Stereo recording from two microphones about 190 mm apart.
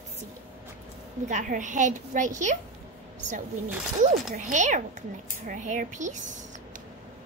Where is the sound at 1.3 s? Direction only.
40° right (ahead or behind).